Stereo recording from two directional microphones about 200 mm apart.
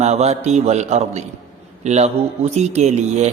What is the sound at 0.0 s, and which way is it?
A man's voice, 35° right (ahead or behind).